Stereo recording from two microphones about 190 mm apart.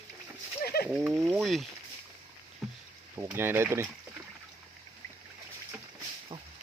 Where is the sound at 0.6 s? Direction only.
55° left (ahead or behind).